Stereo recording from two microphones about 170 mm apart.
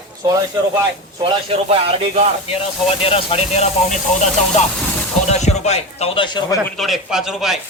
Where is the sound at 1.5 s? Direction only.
40° right (ahead or behind).